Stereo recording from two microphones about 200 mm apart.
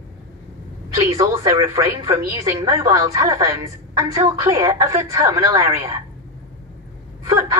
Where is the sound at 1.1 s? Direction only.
15° right (ahead or behind).